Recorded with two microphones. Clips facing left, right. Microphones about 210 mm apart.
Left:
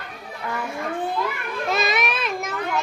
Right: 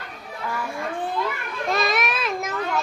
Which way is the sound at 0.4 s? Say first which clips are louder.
Left 1 dB; 20° left (ahead or behind).